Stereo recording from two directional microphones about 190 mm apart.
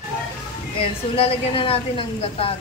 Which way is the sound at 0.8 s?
30° left (ahead or behind).